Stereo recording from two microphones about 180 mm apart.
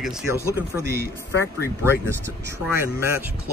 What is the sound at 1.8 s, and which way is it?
Speech, 15° right (ahead or behind).